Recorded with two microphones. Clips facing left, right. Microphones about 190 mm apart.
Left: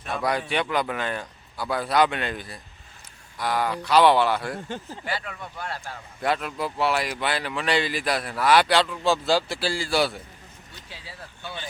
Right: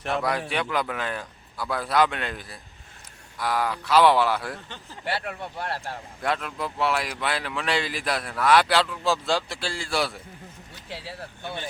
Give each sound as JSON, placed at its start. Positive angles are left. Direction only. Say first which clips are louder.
{"t": 0.2, "sound": "speech", "louder": "left 1 dB", "side_deg": 0}
{"t": 4.5, "sound": "speech", "louder": "left 8 dB", "side_deg": 45}
{"t": 5.4, "sound": "speech", "louder": "right 3 dB", "side_deg": -30}
{"t": 6.2, "sound": "speech", "louder": "left 2 dB", "side_deg": 5}
{"t": 10.8, "sound": "speech", "louder": "right 8 dB", "side_deg": -90}